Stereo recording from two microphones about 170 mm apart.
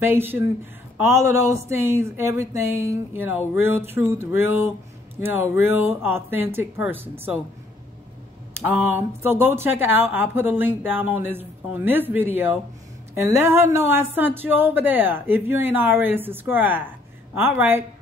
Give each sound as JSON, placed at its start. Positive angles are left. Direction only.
{"t": 0.0, "sound": "speech", "side_deg": -10}
{"t": 8.5, "sound": "speech", "side_deg": -15}